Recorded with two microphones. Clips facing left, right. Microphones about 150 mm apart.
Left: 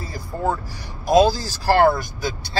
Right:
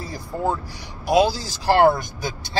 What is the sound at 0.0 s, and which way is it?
Speech, 20° right (ahead or behind).